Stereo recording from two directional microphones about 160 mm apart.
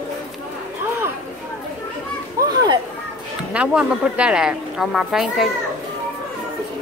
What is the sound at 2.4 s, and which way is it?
Chatter, 20° right (ahead or behind).